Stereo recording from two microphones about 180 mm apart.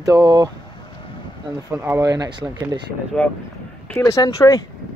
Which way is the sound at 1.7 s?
15° right (ahead or behind).